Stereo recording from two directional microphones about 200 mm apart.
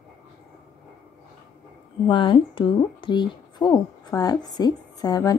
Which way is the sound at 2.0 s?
25° left (ahead or behind).